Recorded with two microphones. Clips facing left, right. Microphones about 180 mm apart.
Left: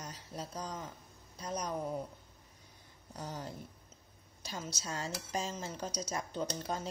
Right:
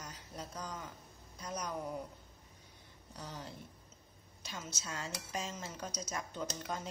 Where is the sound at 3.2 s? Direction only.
45° left (ahead or behind).